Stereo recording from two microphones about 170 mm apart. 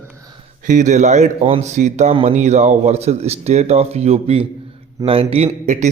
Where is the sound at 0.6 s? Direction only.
45° right (ahead or behind).